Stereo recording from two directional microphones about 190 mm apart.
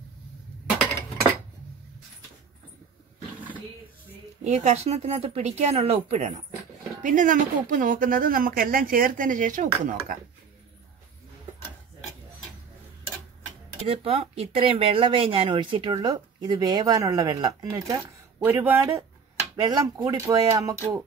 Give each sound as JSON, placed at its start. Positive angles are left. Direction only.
{"t": 4.5, "sound": "speech", "side_deg": -35}
{"t": 13.8, "sound": "speech", "side_deg": -30}